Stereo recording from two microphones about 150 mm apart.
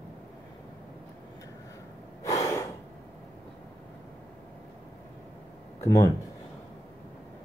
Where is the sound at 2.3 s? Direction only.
20° left (ahead or behind).